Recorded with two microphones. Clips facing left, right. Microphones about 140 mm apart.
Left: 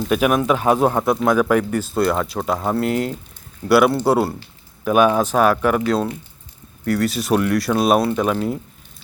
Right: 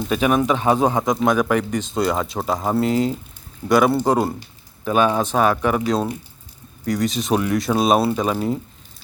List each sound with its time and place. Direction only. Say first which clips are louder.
0.1 s speech: left 1 dB; 5° left (ahead or behind)
4.2 s speech: left 1 dB; 15° right (ahead or behind)
4.9 s speech: left 3 dB; 10° left (ahead or behind)
6.8 s speech: left 2 dB; 5° left (ahead or behind)